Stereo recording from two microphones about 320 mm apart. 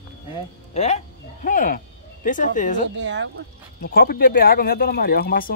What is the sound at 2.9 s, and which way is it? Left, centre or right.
Speech, right.